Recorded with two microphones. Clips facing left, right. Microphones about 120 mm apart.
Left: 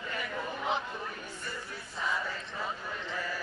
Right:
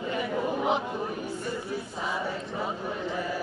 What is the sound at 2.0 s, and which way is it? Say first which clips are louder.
Chant: even; 25° right (ahead or behind).